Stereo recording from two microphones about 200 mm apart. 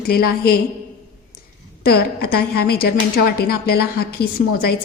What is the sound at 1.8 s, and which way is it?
A woman's voice, 50° left (ahead or behind).